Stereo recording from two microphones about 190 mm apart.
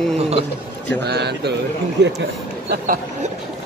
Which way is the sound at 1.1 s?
60° right (ahead or behind).